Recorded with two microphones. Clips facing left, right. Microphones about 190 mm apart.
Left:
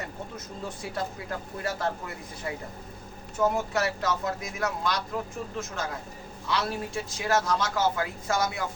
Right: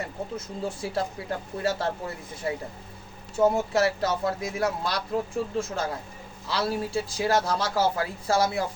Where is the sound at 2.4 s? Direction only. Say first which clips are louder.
Right 5 dB; 30° right (ahead or behind).